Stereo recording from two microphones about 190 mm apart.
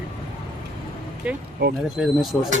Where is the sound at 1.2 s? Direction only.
5° right (ahead or behind).